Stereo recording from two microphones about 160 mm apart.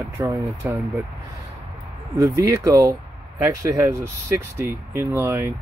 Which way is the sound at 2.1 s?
20° right (ahead or behind).